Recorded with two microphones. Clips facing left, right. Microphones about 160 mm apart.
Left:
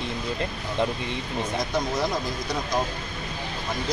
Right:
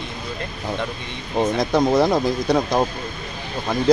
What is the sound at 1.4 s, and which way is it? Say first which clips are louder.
Speech: right 10 dB; 70° right (ahead or behind).